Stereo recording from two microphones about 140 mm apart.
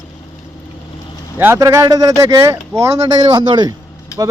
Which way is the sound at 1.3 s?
15° right (ahead or behind).